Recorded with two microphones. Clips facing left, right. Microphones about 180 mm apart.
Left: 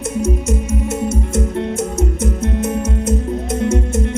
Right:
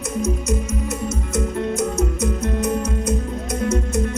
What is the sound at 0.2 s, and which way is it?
Music, 50° left (ahead or behind).